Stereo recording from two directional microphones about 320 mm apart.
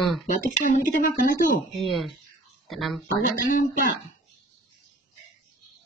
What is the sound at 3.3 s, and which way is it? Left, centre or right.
Speech, left.